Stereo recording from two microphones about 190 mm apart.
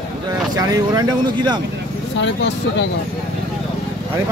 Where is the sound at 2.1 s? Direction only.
70° left (ahead or behind).